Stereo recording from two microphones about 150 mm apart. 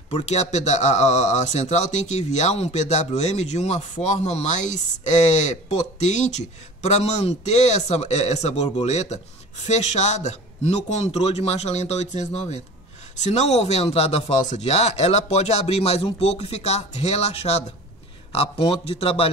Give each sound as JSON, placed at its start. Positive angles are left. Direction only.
{"t": 0.1, "sound": "a man's voice", "side_deg": 45}